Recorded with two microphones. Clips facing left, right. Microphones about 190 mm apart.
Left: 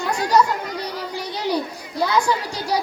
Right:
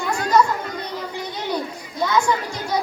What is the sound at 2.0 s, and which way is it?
Speech, 35° left (ahead or behind).